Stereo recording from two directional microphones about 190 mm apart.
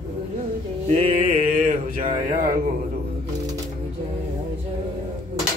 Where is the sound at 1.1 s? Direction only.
40° right (ahead or behind).